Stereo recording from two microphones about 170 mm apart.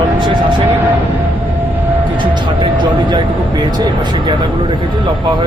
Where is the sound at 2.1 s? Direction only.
30° right (ahead or behind).